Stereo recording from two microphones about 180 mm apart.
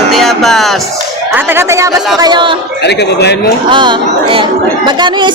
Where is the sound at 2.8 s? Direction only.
70° left (ahead or behind).